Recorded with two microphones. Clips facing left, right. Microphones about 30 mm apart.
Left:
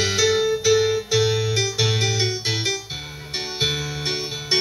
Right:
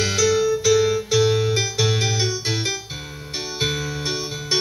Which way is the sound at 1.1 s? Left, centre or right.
Centre.